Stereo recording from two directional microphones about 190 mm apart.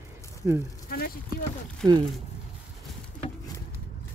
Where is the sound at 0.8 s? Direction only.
50° left (ahead or behind).